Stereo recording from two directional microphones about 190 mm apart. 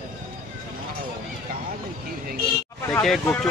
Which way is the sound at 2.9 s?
5° left (ahead or behind).